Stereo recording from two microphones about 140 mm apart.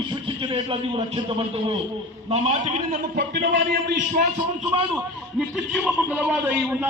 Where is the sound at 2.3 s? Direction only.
60° right (ahead or behind).